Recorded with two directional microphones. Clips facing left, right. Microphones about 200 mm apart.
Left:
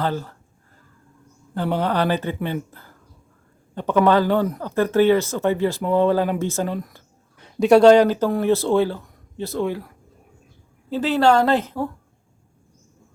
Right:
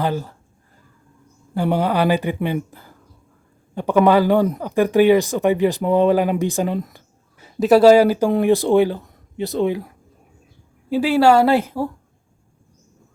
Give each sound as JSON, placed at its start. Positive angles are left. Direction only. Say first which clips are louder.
{"t": 0.0, "sound": "speech", "louder": "right 2 dB", "side_deg": -15}
{"t": 1.5, "sound": "speech", "louder": "right 3 dB", "side_deg": -10}
{"t": 7.3, "sound": "speech", "louder": "even", "side_deg": -5}